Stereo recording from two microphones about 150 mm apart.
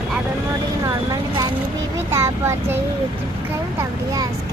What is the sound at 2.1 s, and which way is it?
Vehicle, 20° right (ahead or behind).